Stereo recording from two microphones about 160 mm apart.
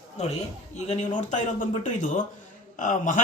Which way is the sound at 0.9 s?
50° left (ahead or behind).